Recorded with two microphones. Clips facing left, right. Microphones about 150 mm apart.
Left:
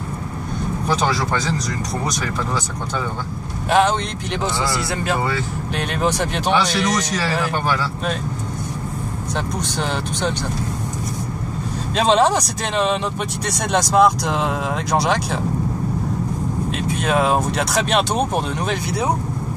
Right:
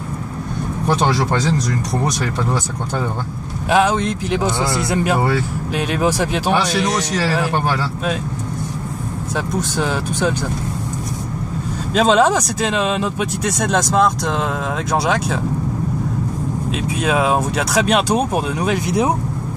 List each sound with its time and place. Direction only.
3.7 s speech: 5° right (ahead or behind)
4.6 s speech: 20° right (ahead or behind)
5.8 s speech: 5° right (ahead or behind)
9.6 s speech: 5° right (ahead or behind)
11.9 s speech: centre (ahead or behind)
16.8 s speech: 5° right (ahead or behind)
18.9 s speech: 20° right (ahead or behind)